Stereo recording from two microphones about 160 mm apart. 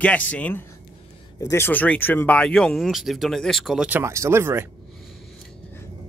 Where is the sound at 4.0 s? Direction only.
15° right (ahead or behind).